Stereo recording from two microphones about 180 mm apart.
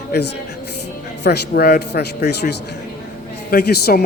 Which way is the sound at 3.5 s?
60° left (ahead or behind).